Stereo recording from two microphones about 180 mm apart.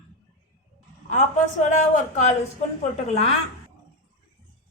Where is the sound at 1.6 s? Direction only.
40° left (ahead or behind).